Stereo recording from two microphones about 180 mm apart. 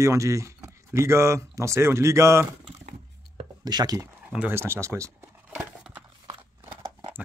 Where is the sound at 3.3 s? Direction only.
25° right (ahead or behind).